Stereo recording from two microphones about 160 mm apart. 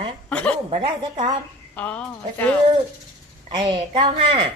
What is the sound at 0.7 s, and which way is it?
Speech, 30° right (ahead or behind).